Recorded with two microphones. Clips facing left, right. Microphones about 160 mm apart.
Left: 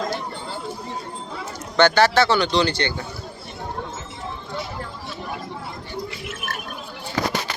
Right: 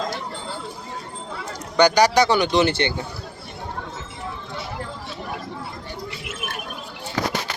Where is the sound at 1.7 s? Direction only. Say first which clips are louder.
Even; 15° right (ahead or behind).